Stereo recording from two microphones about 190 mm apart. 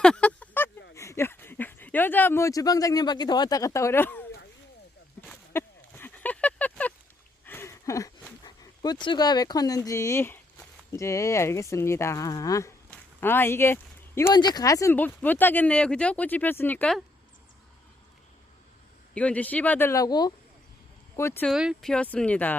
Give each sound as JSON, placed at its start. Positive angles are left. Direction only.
{"t": 0.0, "sound": "a sound", "side_deg": 5}
{"t": 14.2, "sound": "speech", "side_deg": 20}
{"t": 19.1, "sound": "speech", "side_deg": 5}
{"t": 21.5, "sound": "speech", "side_deg": -5}